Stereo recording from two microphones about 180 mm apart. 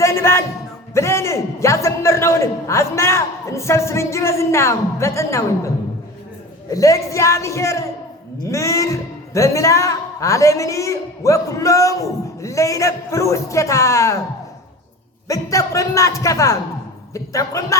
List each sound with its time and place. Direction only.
0.0 s music: 15° left (ahead or behind)
0.9 s speech: 15° left (ahead or behind)
15.3 s speech: 15° left (ahead or behind)